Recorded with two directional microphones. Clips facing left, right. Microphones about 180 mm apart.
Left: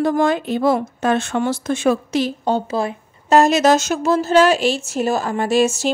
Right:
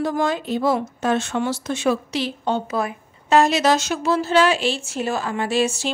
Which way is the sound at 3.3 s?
45° left (ahead or behind).